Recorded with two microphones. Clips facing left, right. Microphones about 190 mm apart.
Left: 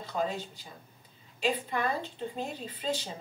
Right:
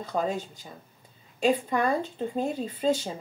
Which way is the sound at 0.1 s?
50° right (ahead or behind).